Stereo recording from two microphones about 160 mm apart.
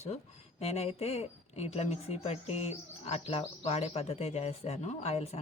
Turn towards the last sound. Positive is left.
turn(degrees=40)  # may be behind; listen again after turning